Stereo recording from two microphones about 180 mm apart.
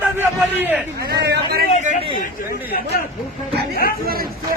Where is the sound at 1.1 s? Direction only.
65° right (ahead or behind).